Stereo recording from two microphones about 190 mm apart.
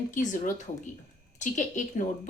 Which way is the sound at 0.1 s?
40° left (ahead or behind).